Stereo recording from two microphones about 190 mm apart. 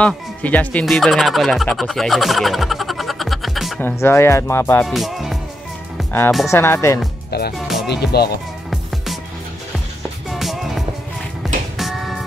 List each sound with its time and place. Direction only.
0.0 s speech: 10° left (ahead or behind)
3.8 s speech: 15° left (ahead or behind)
4.8 s music: centre (ahead or behind)
6.5 s speech: 15° left (ahead or behind)
7.2 s speech: 55° left (ahead or behind)
7.5 s music: centre (ahead or behind)
7.9 s speech: 60° left (ahead or behind)
8.6 s music: centre (ahead or behind)
10.4 s music: centre (ahead or behind)